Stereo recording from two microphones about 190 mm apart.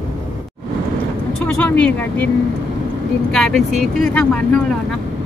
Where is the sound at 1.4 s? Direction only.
5° left (ahead or behind).